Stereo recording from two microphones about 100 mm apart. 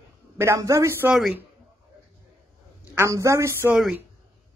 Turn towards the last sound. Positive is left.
turn(degrees=-30)  # may be behind; listen again after turning